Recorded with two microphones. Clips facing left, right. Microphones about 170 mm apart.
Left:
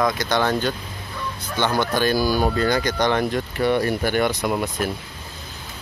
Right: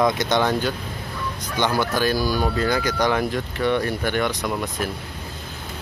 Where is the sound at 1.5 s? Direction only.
10° right (ahead or behind).